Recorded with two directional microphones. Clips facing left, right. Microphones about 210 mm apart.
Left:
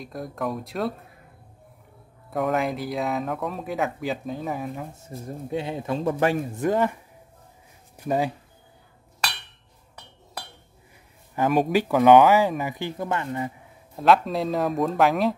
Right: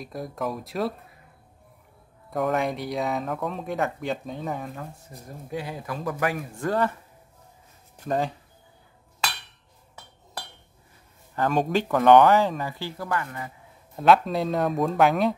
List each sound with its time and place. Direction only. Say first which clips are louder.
0.0 s speech: left 1 dB; centre (ahead or behind)
2.3 s speech: left 1 dB; centre (ahead or behind)
5.5 s speech: left 5 dB; 25° left (ahead or behind); by 8.3 s 10° left (ahead or behind)
11.3 s speech: left 2 dB; 15° left (ahead or behind)
11.9 s speech: left 1 dB; 5° left (ahead or behind); by 13.5 s 25° left (ahead or behind)
13.9 s speech: even; centre (ahead or behind)